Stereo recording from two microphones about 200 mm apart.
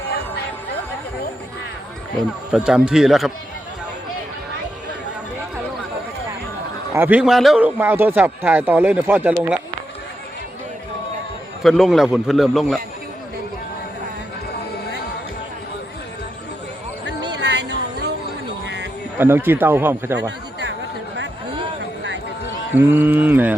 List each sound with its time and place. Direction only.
2.5 s a man's voice: 5° right (ahead or behind)
6.9 s a man's voice: 10° right (ahead or behind)
11.6 s a man's voice: centre (ahead or behind)
17.3 s a sound: 55° right (ahead or behind)
18.6 s music: 60° right (ahead or behind)
19.2 s a man's voice: 10° right (ahead or behind)
22.7 s a man's voice: 10° right (ahead or behind)